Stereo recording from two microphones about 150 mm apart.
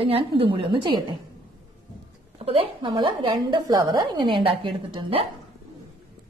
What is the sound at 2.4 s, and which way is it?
A woman's voice, 40° right (ahead or behind).